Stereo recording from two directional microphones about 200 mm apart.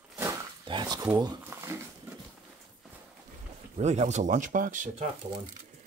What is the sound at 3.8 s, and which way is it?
Speech, 35° right (ahead or behind).